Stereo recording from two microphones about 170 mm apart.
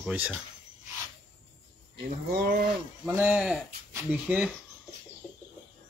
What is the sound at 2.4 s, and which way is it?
Wild animals, 60° right (ahead or behind).